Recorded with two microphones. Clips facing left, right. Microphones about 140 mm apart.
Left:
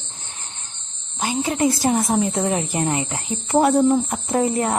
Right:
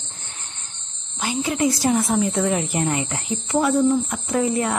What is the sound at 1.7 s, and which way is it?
Speech, 45° left (ahead or behind).